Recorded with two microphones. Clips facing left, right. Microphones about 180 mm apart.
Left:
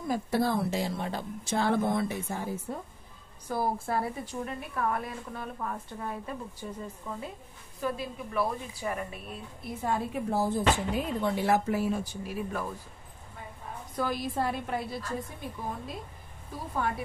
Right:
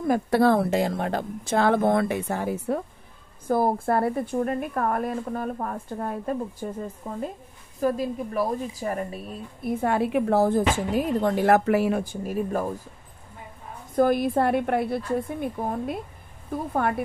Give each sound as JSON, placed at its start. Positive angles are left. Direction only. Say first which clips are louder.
{"t": 0.0, "sound": "a woman's voice", "louder": "right 8 dB", "side_deg": -65}
{"t": 3.4, "sound": "a woman's voice", "louder": "right 8 dB", "side_deg": -50}
{"t": 9.7, "sound": "a woman's voice", "louder": "right 8 dB", "side_deg": -65}
{"t": 11.1, "sound": "a woman's voice", "louder": "right 8 dB", "side_deg": -45}
{"t": 11.5, "sound": "speech", "louder": "right 7 dB", "side_deg": -70}
{"t": 12.0, "sound": "a woman's voice", "louder": "right 7 dB", "side_deg": -50}
{"t": 13.9, "sound": "a woman's voice", "louder": "right 10 dB", "side_deg": -55}